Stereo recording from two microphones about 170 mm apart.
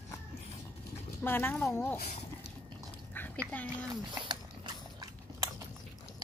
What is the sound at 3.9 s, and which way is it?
Biting, 25° right (ahead or behind).